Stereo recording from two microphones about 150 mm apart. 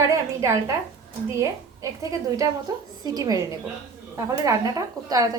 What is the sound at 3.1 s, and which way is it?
A woman's voice, 25° right (ahead or behind).